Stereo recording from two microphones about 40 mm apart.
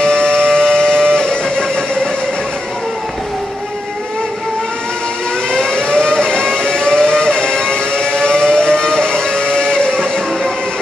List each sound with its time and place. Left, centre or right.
0.0 s music: centre
5.5 s vehicle: centre